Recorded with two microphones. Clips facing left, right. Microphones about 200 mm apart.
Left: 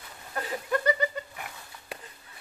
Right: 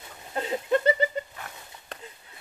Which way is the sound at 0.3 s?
25° right (ahead or behind).